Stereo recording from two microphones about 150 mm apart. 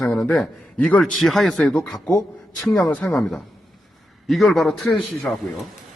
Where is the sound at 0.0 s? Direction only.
5° left (ahead or behind).